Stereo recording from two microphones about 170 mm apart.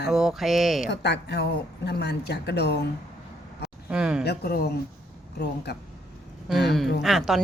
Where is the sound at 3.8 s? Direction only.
5° right (ahead or behind).